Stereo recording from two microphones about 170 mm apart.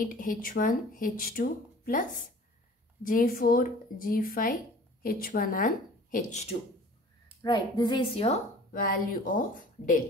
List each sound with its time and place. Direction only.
0.0 s speech: 50° left (ahead or behind)
7.4 s a woman's voice: 25° left (ahead or behind)
8.7 s a woman's voice: 55° left (ahead or behind)